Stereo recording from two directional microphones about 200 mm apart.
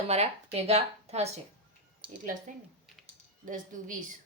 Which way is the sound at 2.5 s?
40° right (ahead or behind).